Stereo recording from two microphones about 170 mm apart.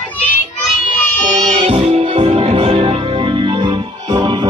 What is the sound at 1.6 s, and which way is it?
Music, 35° right (ahead or behind).